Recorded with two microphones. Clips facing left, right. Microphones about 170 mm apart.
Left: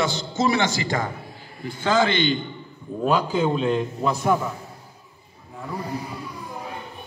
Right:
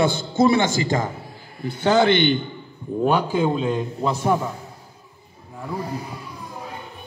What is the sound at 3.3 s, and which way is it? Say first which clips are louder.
Speech: even; 10° right (ahead or behind).